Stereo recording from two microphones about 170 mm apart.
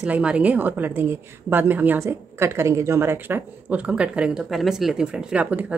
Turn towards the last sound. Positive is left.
turn(degrees=-10)  # may be behind; listen again after turning